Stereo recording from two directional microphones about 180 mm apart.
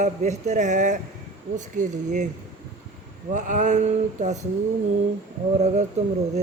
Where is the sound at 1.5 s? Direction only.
45° right (ahead or behind).